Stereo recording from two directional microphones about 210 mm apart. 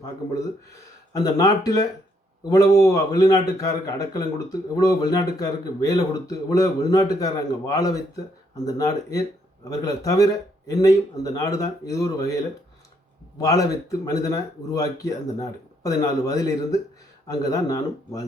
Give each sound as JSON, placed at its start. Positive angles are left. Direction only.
{"t": 1.1, "sound": "a man's voice", "side_deg": 15}
{"t": 13.4, "sound": "a man's voice", "side_deg": 15}